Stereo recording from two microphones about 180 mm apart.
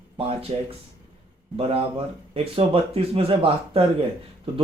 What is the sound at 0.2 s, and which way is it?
Speech, 30° right (ahead or behind).